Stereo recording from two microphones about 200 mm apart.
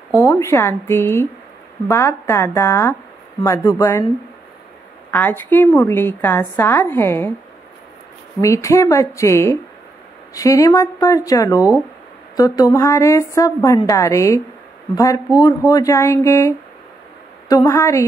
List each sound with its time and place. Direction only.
0.1 s a woman's voice: 15° left (ahead or behind)
5.1 s a woman's voice: 10° left (ahead or behind)
8.4 s a woman's voice: 15° left (ahead or behind)
15.4 s a woman's voice: 20° left (ahead or behind)